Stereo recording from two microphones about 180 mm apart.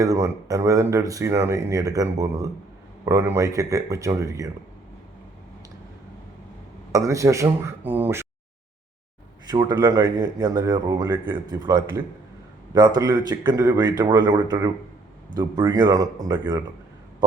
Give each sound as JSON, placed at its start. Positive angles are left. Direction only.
{"t": 0.0, "sound": "speech", "side_deg": -20}
{"t": 6.9, "sound": "speech", "side_deg": -20}
{"t": 9.5, "sound": "speech", "side_deg": -25}